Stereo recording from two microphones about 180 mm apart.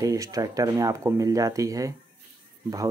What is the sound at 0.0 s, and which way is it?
Speech, 20° right (ahead or behind).